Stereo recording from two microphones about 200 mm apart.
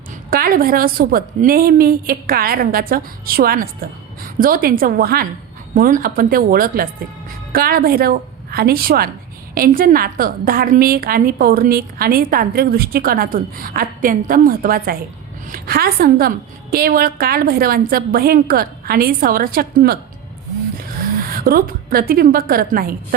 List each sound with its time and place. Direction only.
0.3 s a woman's voice: 45° right (ahead or behind)